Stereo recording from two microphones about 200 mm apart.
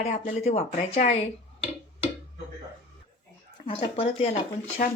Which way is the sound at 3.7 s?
30° left (ahead or behind).